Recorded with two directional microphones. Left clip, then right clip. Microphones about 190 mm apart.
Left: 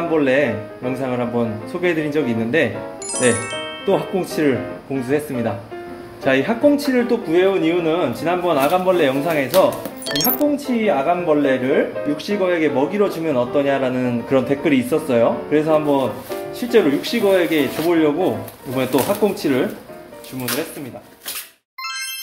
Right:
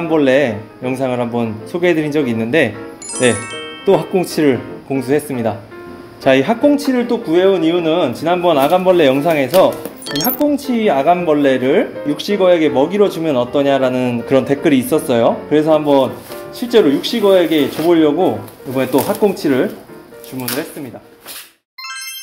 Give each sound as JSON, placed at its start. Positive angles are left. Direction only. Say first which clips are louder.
{"t": 0.1, "sound": "speech", "louder": "right 5 dB", "side_deg": -35}
{"t": 3.2, "sound": "music", "louder": "right 3 dB", "side_deg": 0}
{"t": 3.9, "sound": "speech", "louder": "right 6 dB", "side_deg": -35}
{"t": 10.1, "sound": "speech", "louder": "right 1 dB", "side_deg": 0}
{"t": 10.5, "sound": "speech", "louder": "right 4 dB", "side_deg": -45}